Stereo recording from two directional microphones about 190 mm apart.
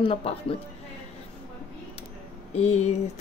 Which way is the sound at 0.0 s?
30° left (ahead or behind).